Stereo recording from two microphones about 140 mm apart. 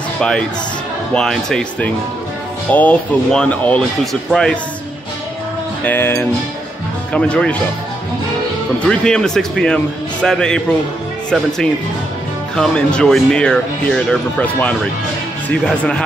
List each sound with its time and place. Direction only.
0.2 s speech: 5° left (ahead or behind)
5.9 s speech: 15° left (ahead or behind)
8.8 s speech: 5° left (ahead or behind)
12.5 s speech: 5° left (ahead or behind)